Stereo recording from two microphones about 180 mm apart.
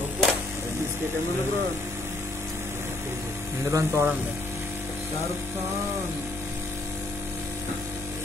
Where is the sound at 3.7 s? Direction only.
15° right (ahead or behind).